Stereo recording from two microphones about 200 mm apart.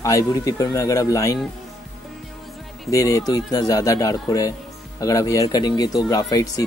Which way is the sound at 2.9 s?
15° left (ahead or behind).